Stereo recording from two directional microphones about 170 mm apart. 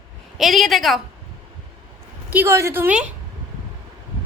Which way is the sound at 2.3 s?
15° right (ahead or behind).